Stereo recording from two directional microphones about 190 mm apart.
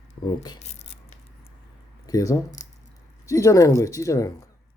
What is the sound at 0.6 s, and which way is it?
Tearing, 35° left (ahead or behind).